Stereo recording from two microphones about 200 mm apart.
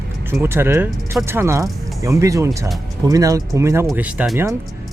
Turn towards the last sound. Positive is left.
turn(degrees=-10)  # may be behind; listen again after turning